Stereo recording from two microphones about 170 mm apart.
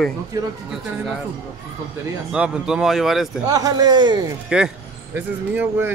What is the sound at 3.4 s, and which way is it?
Speech, 25° right (ahead or behind).